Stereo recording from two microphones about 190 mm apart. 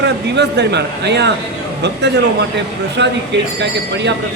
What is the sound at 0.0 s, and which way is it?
Speech, 60° right (ahead or behind).